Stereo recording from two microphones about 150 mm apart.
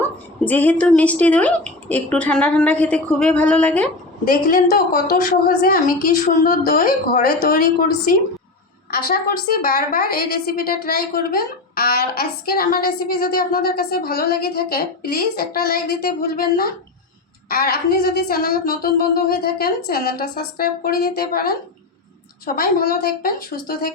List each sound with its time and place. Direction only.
0.4 s a woman's voice: 10° left (ahead or behind)
4.3 s a woman's voice: 80° left
8.9 s a woman's voice: 90° left
22.4 s a woman's voice: 75° left (ahead or behind)